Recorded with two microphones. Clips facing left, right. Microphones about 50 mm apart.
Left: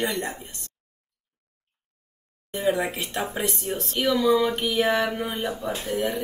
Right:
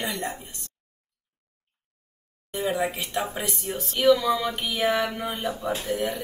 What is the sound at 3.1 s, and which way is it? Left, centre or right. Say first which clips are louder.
Speech: left 1 dB; centre.